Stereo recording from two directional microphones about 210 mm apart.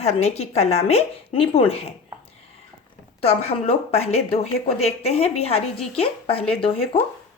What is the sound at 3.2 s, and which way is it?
Speech, 30° left (ahead or behind).